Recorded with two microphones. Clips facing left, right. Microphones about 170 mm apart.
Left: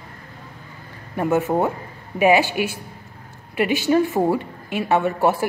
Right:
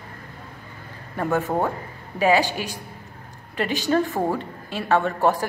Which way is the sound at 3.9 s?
15° left (ahead or behind).